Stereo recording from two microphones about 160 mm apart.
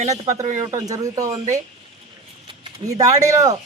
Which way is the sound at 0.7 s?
20° right (ahead or behind).